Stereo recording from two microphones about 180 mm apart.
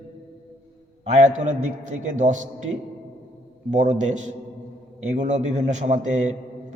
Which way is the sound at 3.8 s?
40° right (ahead or behind).